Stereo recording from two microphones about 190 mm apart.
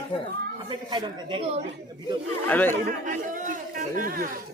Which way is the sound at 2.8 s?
45° right (ahead or behind).